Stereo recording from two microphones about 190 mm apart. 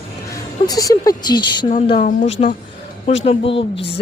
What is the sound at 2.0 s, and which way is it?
Speech, 40° left (ahead or behind).